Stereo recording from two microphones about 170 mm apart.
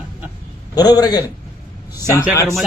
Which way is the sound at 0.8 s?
25° left (ahead or behind).